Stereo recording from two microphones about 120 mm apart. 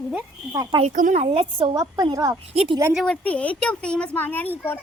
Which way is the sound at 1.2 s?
50° right (ahead or behind).